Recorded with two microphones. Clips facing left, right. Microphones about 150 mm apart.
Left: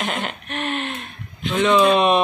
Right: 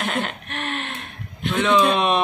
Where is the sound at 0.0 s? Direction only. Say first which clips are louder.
Even; centre (ahead or behind).